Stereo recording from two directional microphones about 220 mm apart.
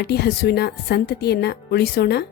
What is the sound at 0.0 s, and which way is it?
A woman's voice, 45° left (ahead or behind).